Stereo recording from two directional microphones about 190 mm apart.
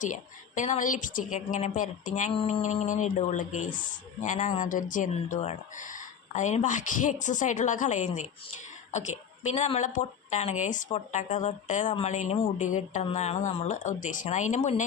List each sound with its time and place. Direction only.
0.0 s a woman's voice: 40° left (ahead or behind)
2.3 s mantra: 30° left (ahead or behind)
2.6 s speech: 40° left (ahead or behind)